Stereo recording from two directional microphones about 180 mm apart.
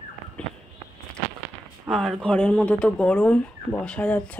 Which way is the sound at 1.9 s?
Centre (ahead or behind).